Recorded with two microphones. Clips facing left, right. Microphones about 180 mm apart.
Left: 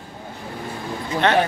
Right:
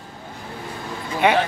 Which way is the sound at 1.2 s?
10° right (ahead or behind).